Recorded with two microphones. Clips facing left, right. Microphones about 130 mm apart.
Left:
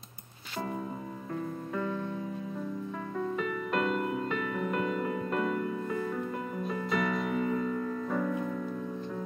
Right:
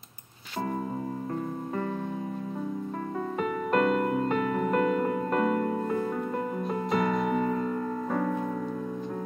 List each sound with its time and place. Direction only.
3.3 s music: 45° right (ahead or behind)